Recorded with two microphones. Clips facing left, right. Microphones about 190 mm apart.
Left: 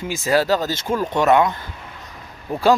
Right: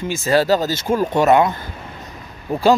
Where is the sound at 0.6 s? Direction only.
5° right (ahead or behind).